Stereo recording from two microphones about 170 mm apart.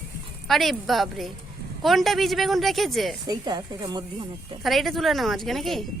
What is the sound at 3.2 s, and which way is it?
Speech, 25° right (ahead or behind).